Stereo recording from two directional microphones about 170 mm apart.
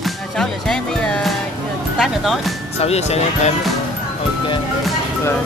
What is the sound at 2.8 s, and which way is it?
Speech, 40° left (ahead or behind).